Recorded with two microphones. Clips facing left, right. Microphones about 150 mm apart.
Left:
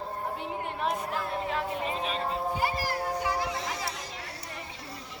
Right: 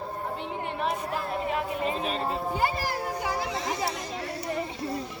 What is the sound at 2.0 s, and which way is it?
Speech, 45° right (ahead or behind).